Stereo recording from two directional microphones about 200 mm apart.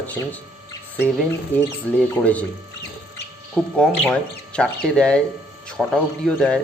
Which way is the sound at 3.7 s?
5° left (ahead or behind).